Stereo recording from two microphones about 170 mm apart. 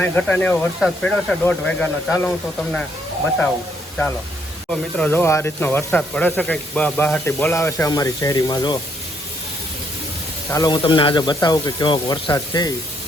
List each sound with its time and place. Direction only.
0.0 s speech: 10° left (ahead or behind)
4.7 s speech: 10° left (ahead or behind); by 8.8 s 25° left (ahead or behind)
10.5 s speech: 20° left (ahead or behind)